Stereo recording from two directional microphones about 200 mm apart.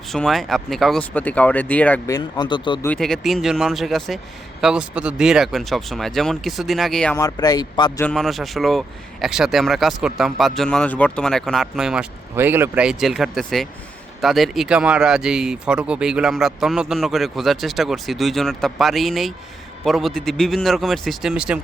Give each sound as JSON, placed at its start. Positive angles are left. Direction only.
{"t": 0.1, "sound": "speech", "side_deg": 0}
{"t": 2.8, "sound": "speech", "side_deg": 5}
{"t": 7.2, "sound": "speech", "side_deg": 20}
{"t": 8.0, "sound": "speech", "side_deg": 0}